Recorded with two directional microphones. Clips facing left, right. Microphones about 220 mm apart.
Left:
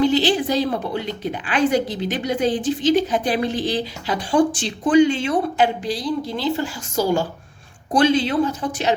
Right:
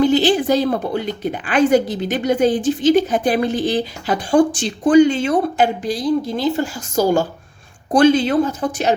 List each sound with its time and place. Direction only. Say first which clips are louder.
0.0 s a woman's voice: right 3 dB; 50° right (ahead or behind)